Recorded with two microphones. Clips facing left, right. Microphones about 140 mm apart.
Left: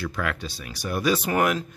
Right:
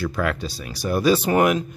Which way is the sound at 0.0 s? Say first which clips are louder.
Right 5 dB; 40° right (ahead or behind).